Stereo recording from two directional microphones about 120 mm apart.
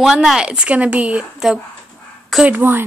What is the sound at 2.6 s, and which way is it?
Speech, 20° right (ahead or behind).